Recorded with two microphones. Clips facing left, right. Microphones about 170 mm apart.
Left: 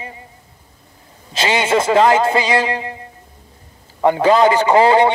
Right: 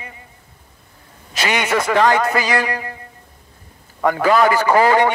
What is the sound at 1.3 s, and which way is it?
A man's voice, 25° left (ahead or behind).